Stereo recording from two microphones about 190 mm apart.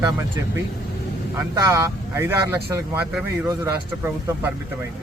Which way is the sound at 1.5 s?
20° right (ahead or behind).